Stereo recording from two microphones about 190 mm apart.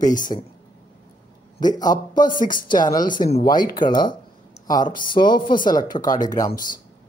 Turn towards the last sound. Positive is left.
turn(degrees=20)  # may be behind; listen again after turning